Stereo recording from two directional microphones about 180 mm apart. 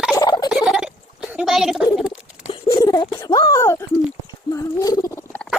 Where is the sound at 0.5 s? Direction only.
5° right (ahead or behind).